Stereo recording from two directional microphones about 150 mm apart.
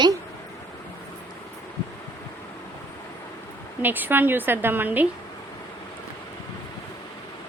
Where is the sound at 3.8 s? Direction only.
10° right (ahead or behind).